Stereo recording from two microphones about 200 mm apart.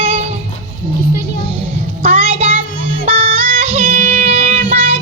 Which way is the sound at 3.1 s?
30° right (ahead or behind).